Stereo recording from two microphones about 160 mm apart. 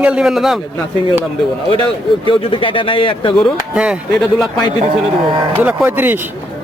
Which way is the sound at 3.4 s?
5° right (ahead or behind).